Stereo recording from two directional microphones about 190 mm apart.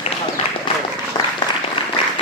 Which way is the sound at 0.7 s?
25° left (ahead or behind).